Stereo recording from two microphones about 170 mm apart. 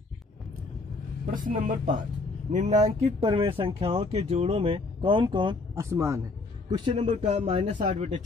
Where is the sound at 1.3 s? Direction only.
50° right (ahead or behind); by 5.6 s 30° right (ahead or behind).